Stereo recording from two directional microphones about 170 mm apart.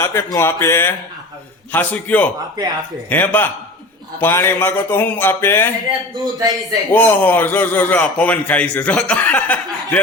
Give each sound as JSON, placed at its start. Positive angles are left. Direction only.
{"t": 0.0, "sound": "a man's voice", "side_deg": 15}
{"t": 6.1, "sound": "a man's voice", "side_deg": -25}
{"t": 6.9, "sound": "a man's voice", "side_deg": 10}